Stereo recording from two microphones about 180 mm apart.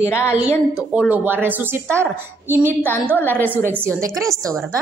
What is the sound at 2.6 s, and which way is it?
Speech, 10° left (ahead or behind).